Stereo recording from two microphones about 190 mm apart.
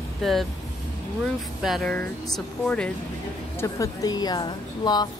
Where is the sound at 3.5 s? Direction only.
15° left (ahead or behind).